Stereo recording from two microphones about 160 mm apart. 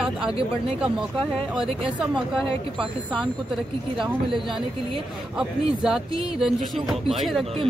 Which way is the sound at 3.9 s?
5° right (ahead or behind).